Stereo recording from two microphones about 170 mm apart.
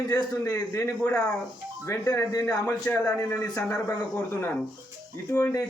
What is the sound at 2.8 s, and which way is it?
A man's voice, 10° left (ahead or behind).